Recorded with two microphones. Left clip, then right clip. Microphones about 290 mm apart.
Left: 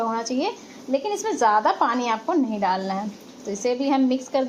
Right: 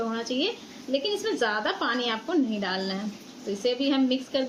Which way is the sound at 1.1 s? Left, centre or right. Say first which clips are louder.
Left 11 dB; centre.